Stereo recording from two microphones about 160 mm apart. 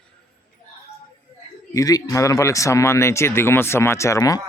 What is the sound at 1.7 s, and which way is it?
Speech, 20° left (ahead or behind).